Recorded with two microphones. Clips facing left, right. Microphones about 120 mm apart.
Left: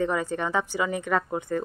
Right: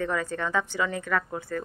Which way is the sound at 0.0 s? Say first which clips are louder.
Left 3 dB; 20° left (ahead or behind).